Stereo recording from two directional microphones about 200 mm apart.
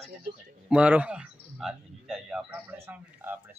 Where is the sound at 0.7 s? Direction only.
5° right (ahead or behind).